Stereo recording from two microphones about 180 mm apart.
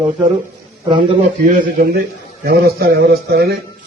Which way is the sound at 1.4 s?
50° right (ahead or behind).